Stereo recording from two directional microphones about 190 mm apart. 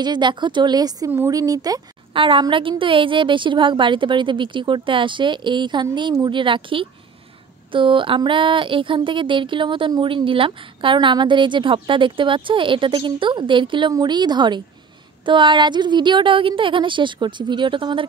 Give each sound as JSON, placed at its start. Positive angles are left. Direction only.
{"t": 0.0, "sound": "speech", "side_deg": -25}